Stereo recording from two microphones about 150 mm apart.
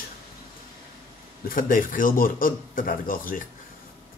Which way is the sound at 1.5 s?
70° left (ahead or behind).